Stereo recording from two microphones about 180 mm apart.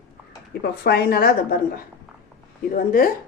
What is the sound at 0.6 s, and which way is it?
A woman's voice, 60° left (ahead or behind).